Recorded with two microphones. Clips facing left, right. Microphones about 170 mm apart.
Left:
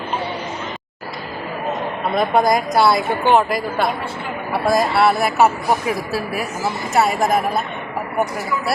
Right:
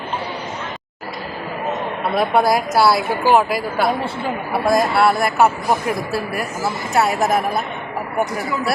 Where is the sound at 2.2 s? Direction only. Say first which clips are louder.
Even; 5° right (ahead or behind).